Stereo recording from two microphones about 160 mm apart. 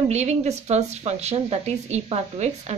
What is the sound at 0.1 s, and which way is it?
A woman's voice, 45° right (ahead or behind).